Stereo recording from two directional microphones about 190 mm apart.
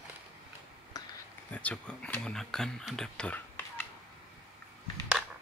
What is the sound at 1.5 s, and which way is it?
Speech, 5° left (ahead or behind).